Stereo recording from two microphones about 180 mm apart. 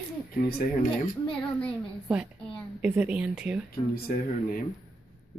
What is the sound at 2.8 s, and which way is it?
Speech, 5° right (ahead or behind).